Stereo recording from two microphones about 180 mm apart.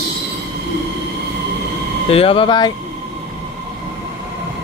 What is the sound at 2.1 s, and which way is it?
Speech, 30° left (ahead or behind).